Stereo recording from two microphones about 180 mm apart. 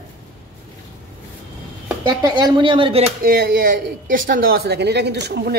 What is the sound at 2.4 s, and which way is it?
Speech, 25° right (ahead or behind).